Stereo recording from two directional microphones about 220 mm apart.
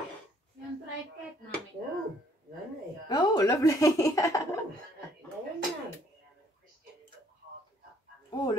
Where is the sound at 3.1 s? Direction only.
15° left (ahead or behind).